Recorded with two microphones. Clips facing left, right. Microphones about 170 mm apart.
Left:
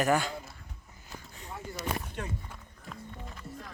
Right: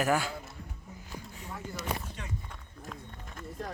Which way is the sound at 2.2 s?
50° left (ahead or behind).